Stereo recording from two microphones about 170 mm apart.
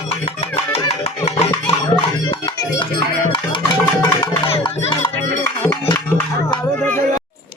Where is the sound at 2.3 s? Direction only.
30° left (ahead or behind).